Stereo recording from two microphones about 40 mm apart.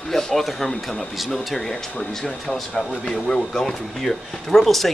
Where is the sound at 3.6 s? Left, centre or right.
Centre.